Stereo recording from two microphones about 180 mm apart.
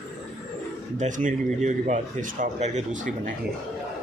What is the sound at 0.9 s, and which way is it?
A man's voice, 45° right (ahead or behind).